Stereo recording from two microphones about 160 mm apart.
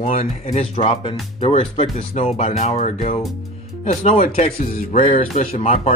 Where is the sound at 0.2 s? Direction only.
40° left (ahead or behind).